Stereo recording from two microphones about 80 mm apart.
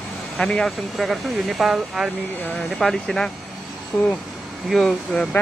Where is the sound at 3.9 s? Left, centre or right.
Left.